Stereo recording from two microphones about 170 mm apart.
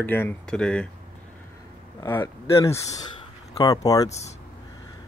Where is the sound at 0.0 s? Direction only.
10° left (ahead or behind).